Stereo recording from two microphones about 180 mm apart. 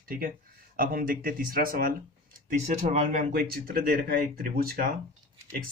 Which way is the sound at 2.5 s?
35° right (ahead or behind).